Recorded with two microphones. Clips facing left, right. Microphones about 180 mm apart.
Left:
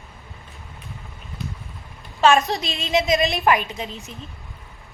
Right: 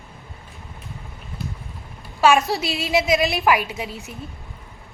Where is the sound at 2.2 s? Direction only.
5° right (ahead or behind).